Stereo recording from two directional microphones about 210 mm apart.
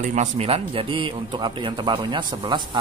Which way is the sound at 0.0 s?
35° right (ahead or behind).